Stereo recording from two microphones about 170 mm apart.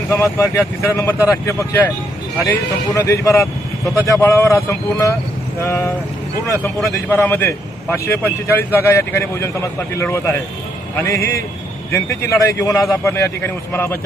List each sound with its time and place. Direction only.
0.1 s a man's voice: 15° left (ahead or behind)
7.1 s a man's voice: 15° left (ahead or behind)